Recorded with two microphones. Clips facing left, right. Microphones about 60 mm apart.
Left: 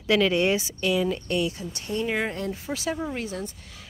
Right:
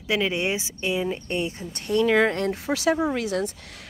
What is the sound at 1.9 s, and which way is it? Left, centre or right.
Speech, right.